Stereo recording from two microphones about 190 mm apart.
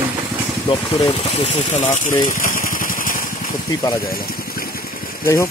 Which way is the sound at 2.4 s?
45° left (ahead or behind).